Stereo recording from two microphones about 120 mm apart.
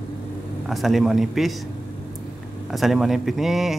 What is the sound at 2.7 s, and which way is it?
Speech, centre (ahead or behind).